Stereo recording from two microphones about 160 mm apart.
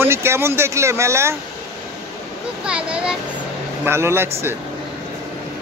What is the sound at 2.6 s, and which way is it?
A child's voice, 5° right (ahead or behind).